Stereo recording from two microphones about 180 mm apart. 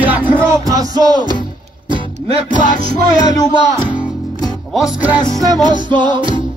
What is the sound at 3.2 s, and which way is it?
Speech, 20° left (ahead or behind).